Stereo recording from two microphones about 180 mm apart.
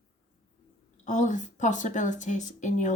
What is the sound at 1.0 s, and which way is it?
A woman's voice, 45° left (ahead or behind).